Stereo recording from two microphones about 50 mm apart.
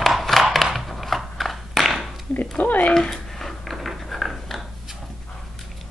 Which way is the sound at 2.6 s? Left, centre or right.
Left.